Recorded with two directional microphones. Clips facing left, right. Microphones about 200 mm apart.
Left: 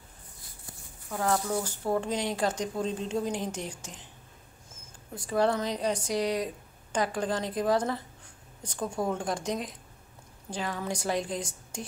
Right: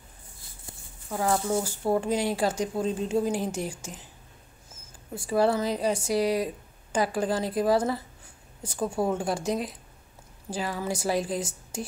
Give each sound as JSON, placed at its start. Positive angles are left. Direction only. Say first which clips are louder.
{"t": 1.3, "sound": "speech", "louder": "right 3 dB", "side_deg": -25}
{"t": 1.6, "sound": "speech", "louder": "right 3 dB", "side_deg": -10}
{"t": 5.1, "sound": "speech", "louder": "right 3 dB", "side_deg": -10}